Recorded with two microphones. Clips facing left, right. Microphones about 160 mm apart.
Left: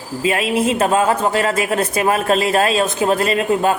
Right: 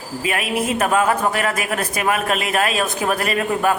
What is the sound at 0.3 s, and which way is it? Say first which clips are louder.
A man's voice: left 5 dB; 25° left (ahead or behind).